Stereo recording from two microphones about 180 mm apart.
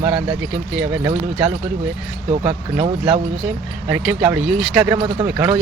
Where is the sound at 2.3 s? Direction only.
30° right (ahead or behind).